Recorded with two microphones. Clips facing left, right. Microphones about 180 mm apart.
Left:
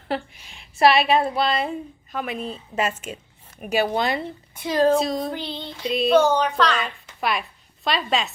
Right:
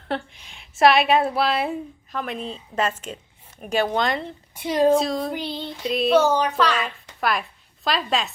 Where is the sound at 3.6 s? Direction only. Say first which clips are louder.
Even; 10° left (ahead or behind).